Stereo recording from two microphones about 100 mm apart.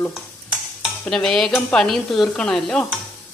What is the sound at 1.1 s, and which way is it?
Stir, 5° left (ahead or behind).